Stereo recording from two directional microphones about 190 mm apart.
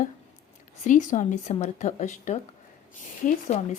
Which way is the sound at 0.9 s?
40° left (ahead or behind).